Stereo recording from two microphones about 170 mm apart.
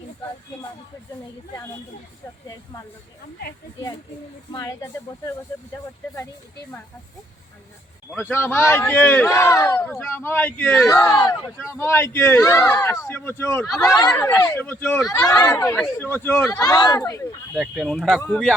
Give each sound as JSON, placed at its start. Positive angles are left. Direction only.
{"t": 4.5, "sound": "speech", "side_deg": 20}
{"t": 8.1, "sound": "speech", "side_deg": 10}
{"t": 13.8, "sound": "speech", "side_deg": 25}
{"t": 14.4, "sound": "speech", "side_deg": 10}
{"t": 17.5, "sound": "speech", "side_deg": 0}